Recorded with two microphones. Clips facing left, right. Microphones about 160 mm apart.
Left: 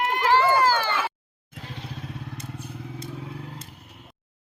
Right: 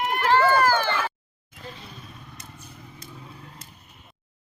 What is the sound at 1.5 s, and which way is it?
Vehicle, 85° left.